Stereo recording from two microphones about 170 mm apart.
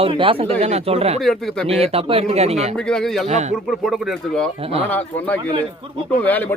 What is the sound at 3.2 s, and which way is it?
Speech, 40° right (ahead or behind).